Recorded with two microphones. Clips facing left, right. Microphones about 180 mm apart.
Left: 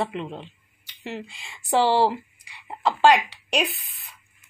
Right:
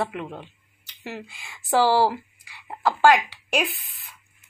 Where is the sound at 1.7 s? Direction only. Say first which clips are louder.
Even; 20° left (ahead or behind).